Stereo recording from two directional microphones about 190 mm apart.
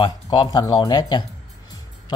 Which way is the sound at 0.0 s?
20° left (ahead or behind).